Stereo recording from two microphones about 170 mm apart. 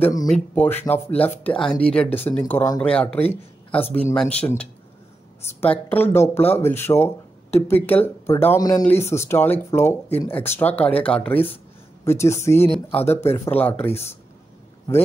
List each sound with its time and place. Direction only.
0.3 s speech: 10° left (ahead or behind)